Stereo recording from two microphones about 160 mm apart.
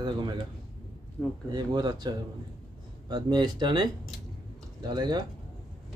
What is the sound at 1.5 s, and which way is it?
Speech, 25° right (ahead or behind).